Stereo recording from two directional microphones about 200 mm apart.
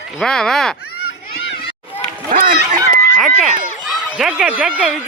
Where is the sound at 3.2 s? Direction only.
Centre (ahead or behind).